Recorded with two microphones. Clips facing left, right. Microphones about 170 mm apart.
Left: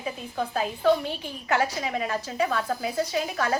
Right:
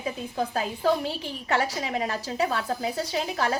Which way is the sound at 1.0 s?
30° right (ahead or behind).